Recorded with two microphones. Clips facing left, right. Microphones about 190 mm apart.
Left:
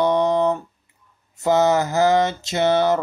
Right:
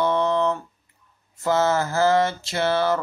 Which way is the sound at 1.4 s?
20° left (ahead or behind).